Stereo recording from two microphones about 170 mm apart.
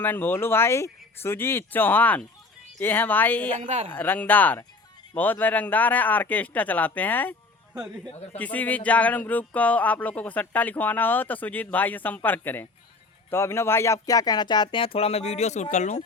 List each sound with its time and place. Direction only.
0.0 s speech: 10° left (ahead or behind)
3.6 s speech: 45° right (ahead or behind)
3.8 s speech: 10° left (ahead or behind)
8.4 s speech: 10° left (ahead or behind); by 16.0 s 45° left (ahead or behind)